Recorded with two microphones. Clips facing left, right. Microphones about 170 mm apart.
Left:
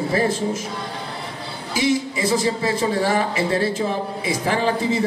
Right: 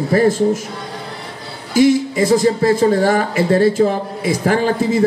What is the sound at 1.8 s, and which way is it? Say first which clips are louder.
Speech: right 8 dB; 50° right (ahead or behind).